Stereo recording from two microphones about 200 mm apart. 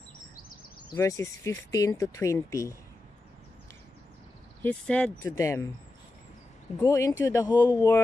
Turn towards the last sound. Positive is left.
turn(degrees=15)  # may be behind; listen again after turning